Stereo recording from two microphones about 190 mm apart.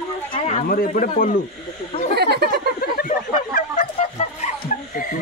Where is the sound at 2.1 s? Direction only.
60° right (ahead or behind).